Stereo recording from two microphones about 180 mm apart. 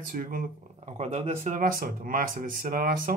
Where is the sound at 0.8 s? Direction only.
40° right (ahead or behind).